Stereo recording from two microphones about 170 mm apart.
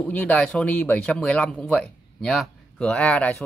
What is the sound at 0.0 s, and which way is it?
A man's voice, 5° left (ahead or behind).